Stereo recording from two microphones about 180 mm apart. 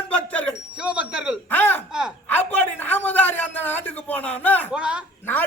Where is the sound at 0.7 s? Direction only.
5° right (ahead or behind).